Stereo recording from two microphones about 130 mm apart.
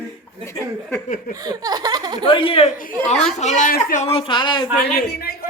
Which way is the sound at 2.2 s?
45° left (ahead or behind).